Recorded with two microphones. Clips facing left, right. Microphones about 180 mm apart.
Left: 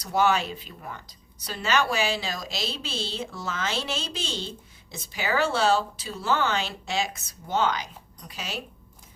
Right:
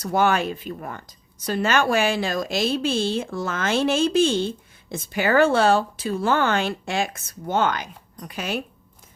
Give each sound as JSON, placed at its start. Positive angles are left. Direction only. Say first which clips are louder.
{"t": 0.0, "sound": "speech", "louder": "right 3 dB", "side_deg": -55}